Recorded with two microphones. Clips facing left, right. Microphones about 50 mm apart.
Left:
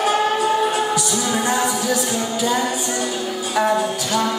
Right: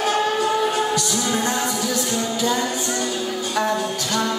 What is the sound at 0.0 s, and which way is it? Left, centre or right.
Music, centre.